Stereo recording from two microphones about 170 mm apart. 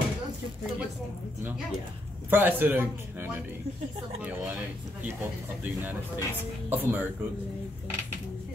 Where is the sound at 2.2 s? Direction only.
10° right (ahead or behind).